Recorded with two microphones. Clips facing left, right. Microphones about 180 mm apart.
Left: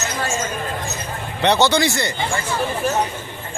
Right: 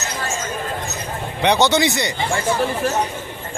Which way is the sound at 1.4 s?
15° right (ahead or behind).